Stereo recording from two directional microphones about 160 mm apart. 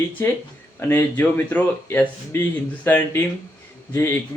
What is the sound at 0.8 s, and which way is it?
Speech, 15° left (ahead or behind).